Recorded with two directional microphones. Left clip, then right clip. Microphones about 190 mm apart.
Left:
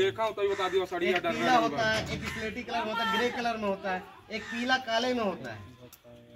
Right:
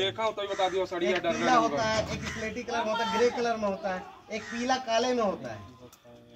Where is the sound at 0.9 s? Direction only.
35° right (ahead or behind).